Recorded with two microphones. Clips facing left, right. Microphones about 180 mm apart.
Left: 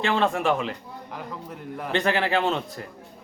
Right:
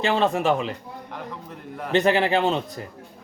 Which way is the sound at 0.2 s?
20° right (ahead or behind).